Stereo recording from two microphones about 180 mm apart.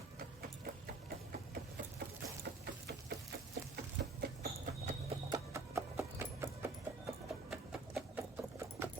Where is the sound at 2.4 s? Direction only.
70° right (ahead or behind).